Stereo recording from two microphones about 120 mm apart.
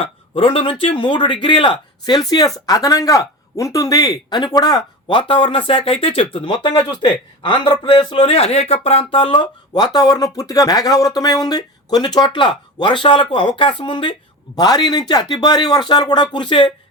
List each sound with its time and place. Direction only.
0.0 s a man's voice: 50° left (ahead or behind)
9.1 s speech: 45° left (ahead or behind)